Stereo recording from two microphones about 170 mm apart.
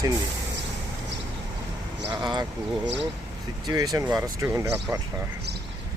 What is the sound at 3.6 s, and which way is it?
Speech, 20° right (ahead or behind).